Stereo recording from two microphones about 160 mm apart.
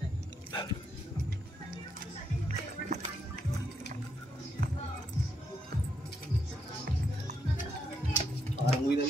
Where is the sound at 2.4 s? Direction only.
45° right (ahead or behind).